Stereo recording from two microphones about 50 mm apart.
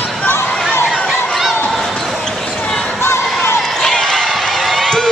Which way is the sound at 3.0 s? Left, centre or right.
Left.